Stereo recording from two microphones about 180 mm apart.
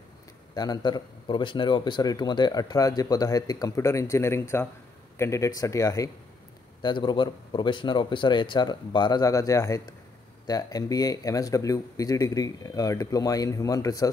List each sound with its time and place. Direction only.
0.6 s a man's voice: 20° left (ahead or behind)